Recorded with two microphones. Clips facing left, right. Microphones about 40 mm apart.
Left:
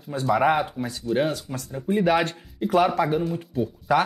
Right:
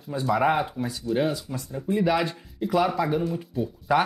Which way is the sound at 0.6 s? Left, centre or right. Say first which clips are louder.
Left 1 dB; centre.